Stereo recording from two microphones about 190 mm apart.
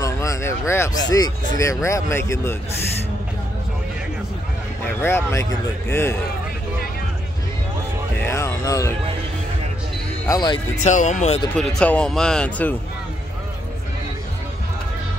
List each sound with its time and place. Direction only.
0.0 s a sound: 15° left (ahead or behind)
1.6 s speech: 15° left (ahead or behind)
5.0 s speech: 15° left (ahead or behind)
8.2 s a sound: 15° left (ahead or behind)
10.2 s speech: 20° left (ahead or behind)
10.8 s speech: 40° left (ahead or behind)
11.5 s speech: 5° left (ahead or behind)